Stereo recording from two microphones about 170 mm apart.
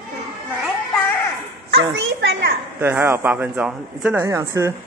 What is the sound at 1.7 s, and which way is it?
Speech, 90° right.